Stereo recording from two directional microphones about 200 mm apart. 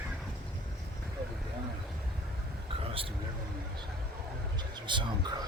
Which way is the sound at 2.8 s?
25° right (ahead or behind).